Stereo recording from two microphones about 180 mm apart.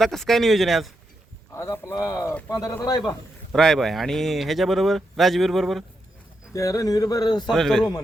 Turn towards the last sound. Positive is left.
turn(degrees=0)  # may be behind; listen again after turning